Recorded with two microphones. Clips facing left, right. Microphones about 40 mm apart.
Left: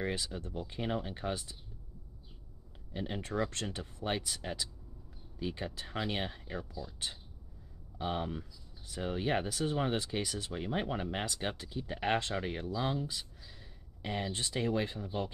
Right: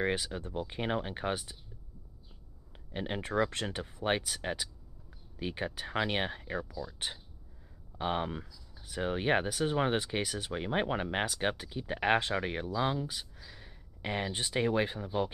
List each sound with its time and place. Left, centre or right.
0.0 s speech: right
2.9 s speech: right
11.6 s speech: right